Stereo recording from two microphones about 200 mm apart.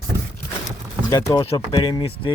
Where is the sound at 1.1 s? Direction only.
15° left (ahead or behind).